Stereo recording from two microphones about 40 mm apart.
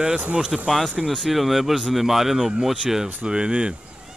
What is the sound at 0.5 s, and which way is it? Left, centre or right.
Speech, centre.